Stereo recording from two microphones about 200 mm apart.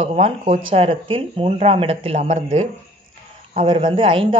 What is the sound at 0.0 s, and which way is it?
Speech, 35° right (ahead or behind).